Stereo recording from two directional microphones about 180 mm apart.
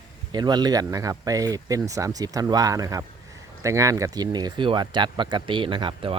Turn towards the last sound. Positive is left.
turn(degrees=-30)  # may be behind; listen again after turning